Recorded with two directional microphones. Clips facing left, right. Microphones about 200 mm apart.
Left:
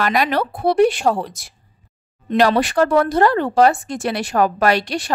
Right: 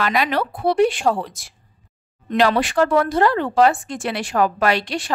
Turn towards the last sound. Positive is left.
turn(degrees=40)  # may be behind; listen again after turning